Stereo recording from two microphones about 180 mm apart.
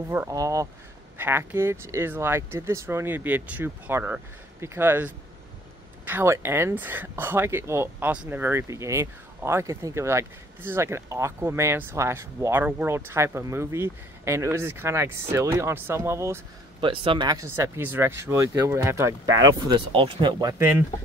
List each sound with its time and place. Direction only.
0.1 s speech: 15° right (ahead or behind)
16.8 s speech: 30° right (ahead or behind)
19.9 s speech: 30° right (ahead or behind); by 20.8 s 15° right (ahead or behind)